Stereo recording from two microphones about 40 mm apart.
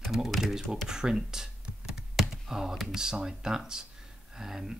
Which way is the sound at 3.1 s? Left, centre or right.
Centre.